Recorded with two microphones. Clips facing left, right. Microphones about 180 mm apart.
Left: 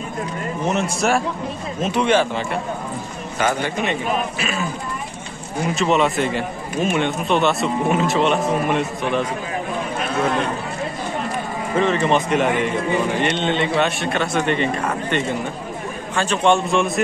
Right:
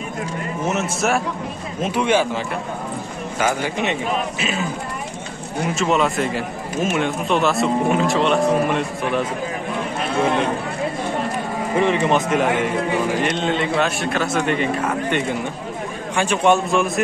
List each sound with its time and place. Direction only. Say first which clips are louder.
0.7 s a man's voice: left 1 dB; 5° right (ahead or behind)
4.4 s speech: right 1 dB; 20° right (ahead or behind)
5.6 s a man's voice: left 1 dB; centre (ahead or behind)
11.7 s speech: even; 15° right (ahead or behind)
12.3 s a man's voice: even; centre (ahead or behind)